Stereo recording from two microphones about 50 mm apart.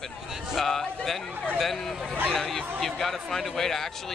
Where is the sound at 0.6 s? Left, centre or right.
Centre.